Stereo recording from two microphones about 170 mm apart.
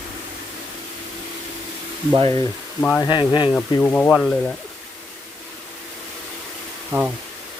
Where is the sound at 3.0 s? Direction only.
25° left (ahead or behind).